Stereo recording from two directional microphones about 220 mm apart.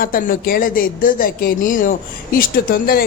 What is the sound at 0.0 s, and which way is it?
Speech, 40° left (ahead or behind).